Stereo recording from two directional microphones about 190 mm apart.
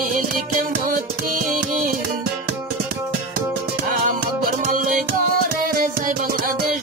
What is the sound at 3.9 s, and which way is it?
Music, 50° right (ahead or behind).